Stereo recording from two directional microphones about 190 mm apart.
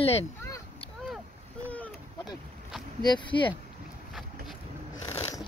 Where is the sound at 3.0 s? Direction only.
25° left (ahead or behind).